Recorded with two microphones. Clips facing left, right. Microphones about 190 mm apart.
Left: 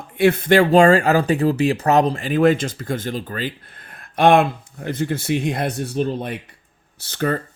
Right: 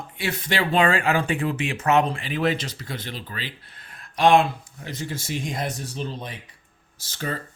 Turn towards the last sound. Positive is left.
turn(degrees=60)  # may be behind; listen again after turning